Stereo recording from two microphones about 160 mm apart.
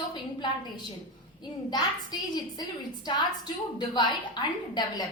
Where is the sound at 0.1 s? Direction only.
30° left (ahead or behind).